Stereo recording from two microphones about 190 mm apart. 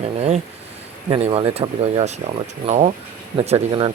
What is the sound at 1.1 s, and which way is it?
Speech, 30° right (ahead or behind).